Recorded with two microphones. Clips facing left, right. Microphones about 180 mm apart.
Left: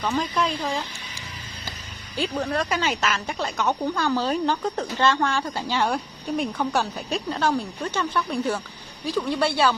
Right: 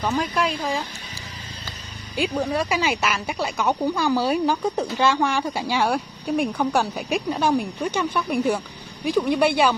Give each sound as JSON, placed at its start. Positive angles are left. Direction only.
{"t": 0.0, "sound": "speech", "side_deg": -5}
{"t": 2.1, "sound": "speech", "side_deg": -10}